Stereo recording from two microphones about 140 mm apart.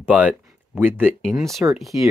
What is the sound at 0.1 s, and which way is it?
Speech, 10° right (ahead or behind).